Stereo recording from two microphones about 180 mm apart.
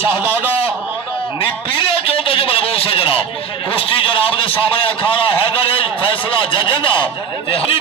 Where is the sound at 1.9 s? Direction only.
30° left (ahead or behind).